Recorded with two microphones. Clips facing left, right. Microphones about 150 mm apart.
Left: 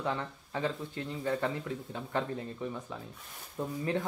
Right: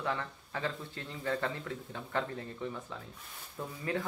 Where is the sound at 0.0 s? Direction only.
20° left (ahead or behind).